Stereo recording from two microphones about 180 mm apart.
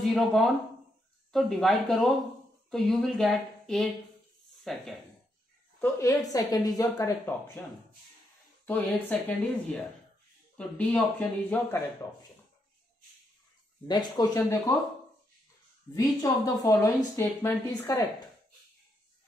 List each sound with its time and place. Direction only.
0.0 s speech: centre (ahead or behind)
5.8 s speech: 15° left (ahead or behind)
10.6 s speech: 5° left (ahead or behind)
13.8 s speech: 20° left (ahead or behind)
15.9 s speech: 15° left (ahead or behind)